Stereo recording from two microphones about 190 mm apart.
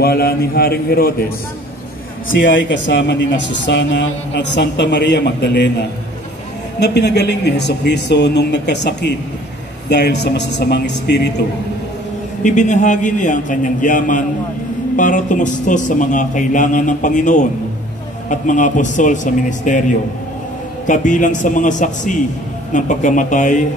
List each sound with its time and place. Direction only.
0.0 s a man's voice: 55° left (ahead or behind)
2.3 s speech: 70° left (ahead or behind)
12.4 s a man's voice: 40° left (ahead or behind)